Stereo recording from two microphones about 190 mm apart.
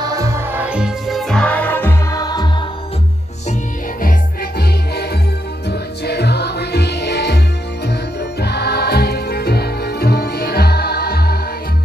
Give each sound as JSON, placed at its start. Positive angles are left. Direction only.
{"t": 0.0, "sound": "music", "side_deg": -20}
{"t": 4.0, "sound": "music", "side_deg": 55}